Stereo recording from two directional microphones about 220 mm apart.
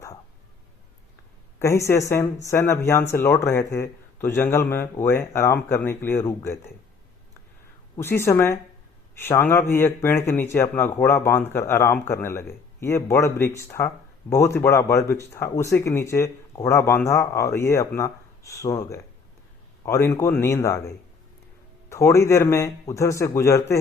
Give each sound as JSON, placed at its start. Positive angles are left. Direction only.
{"t": 1.5, "sound": "speech", "side_deg": 15}
{"t": 7.9, "sound": "speech", "side_deg": 10}